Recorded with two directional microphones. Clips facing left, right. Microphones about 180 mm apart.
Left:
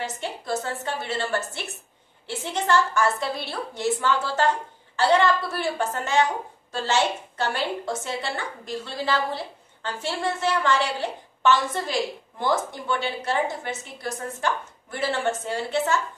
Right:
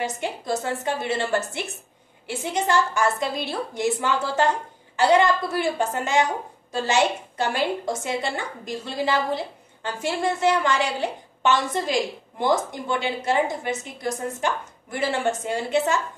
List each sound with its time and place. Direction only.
0.0 s a woman's voice: 15° right (ahead or behind)